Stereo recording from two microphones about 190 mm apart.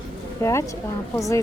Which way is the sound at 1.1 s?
15° left (ahead or behind).